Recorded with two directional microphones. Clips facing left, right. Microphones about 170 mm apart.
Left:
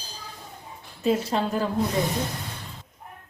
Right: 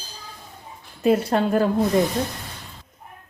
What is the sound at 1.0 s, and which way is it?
Speech, 60° right (ahead or behind).